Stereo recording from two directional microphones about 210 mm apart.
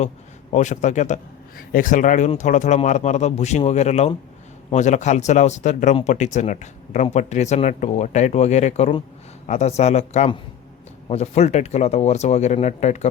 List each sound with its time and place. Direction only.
0.5 s speech: 35° left (ahead or behind)